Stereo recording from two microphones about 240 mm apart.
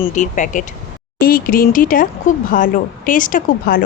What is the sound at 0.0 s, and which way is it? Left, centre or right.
Speech, left.